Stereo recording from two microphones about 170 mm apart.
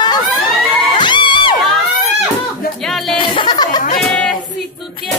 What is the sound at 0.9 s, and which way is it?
Music, 25° left (ahead or behind).